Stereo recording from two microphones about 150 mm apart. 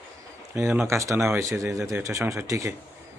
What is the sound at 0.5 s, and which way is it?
Speech, 15° right (ahead or behind).